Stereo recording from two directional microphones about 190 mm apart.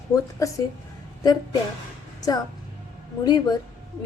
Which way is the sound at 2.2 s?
20° left (ahead or behind).